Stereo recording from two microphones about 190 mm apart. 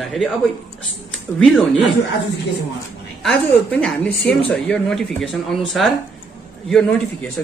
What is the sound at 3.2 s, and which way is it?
A man's voice, 5° left (ahead or behind).